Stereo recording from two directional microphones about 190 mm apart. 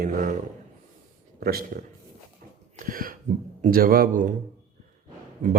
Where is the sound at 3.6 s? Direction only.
50° right (ahead or behind).